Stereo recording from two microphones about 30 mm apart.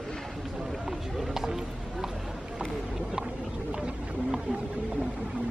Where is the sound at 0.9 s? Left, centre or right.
Centre.